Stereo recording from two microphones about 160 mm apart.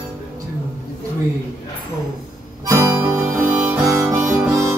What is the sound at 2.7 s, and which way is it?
Harmonica, 15° right (ahead or behind).